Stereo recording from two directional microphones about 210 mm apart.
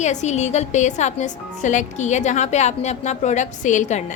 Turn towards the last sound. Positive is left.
turn(degrees=35)  # may be behind; listen again after turning